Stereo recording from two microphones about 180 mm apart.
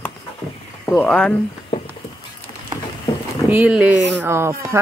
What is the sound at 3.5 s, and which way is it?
Speech, 5° right (ahead or behind).